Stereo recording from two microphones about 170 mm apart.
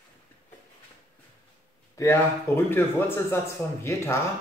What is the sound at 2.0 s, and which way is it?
Speech, 15° left (ahead or behind).